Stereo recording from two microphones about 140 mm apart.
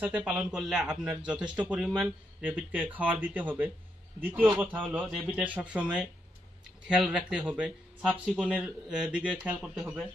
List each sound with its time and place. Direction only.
0.0 s a man's voice: 10° right (ahead or behind)
1.4 s speech: 30° right (ahead or behind)
1.9 s speech: 10° right (ahead or behind)
8.3 s a man's voice: centre (ahead or behind)
8.5 s a man's voice: 10° right (ahead or behind)